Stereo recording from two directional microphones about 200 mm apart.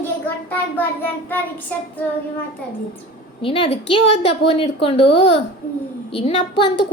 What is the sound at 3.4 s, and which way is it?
A woman's voice, 25° left (ahead or behind).